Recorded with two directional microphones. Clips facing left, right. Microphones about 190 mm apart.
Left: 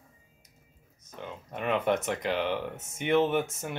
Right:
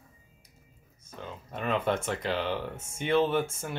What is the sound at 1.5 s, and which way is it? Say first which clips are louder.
Speech: left 1 dB; 15° left (ahead or behind).